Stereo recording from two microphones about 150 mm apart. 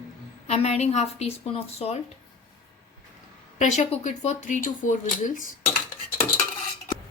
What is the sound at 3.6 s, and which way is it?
Speech, 50° left (ahead or behind).